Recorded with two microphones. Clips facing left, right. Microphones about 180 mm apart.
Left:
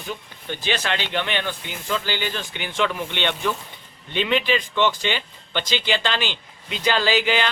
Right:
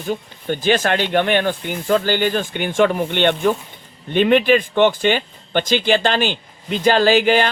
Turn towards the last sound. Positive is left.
turn(degrees=-50)  # may be behind; listen again after turning